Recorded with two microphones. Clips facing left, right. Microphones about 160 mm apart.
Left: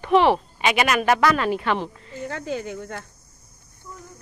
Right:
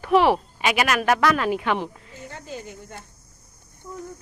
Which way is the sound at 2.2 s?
80° left.